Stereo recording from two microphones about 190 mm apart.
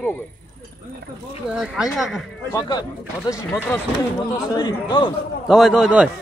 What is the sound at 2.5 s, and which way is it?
Speech, 20° left (ahead or behind).